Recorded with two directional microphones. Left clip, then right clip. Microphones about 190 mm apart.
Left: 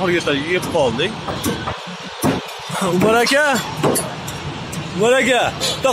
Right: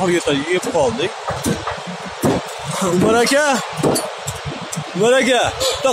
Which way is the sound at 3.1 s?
Centre (ahead or behind).